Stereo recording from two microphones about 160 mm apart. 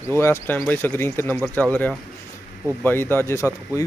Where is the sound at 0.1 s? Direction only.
15° left (ahead or behind).